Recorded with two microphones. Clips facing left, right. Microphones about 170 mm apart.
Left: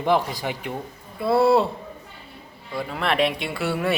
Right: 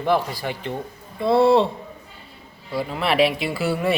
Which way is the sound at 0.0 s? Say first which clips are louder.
Even; 15° left (ahead or behind).